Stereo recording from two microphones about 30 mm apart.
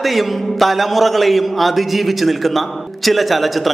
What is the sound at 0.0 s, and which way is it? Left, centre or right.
A man's voice, centre.